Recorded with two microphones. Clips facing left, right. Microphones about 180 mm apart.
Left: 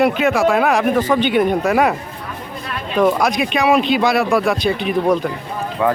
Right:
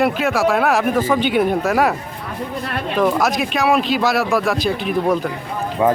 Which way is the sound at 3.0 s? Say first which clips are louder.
Left 2 dB; centre (ahead or behind).